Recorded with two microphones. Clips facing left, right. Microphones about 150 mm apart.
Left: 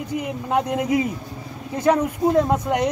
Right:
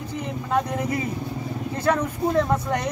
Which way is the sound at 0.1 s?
15° left (ahead or behind).